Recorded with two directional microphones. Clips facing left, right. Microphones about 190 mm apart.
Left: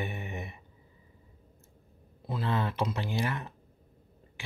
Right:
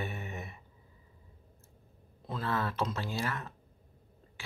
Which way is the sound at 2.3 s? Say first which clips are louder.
Left 2 dB; 15° left (ahead or behind).